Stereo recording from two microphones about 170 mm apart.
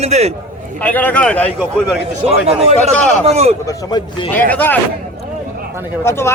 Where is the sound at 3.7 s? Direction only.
25° left (ahead or behind).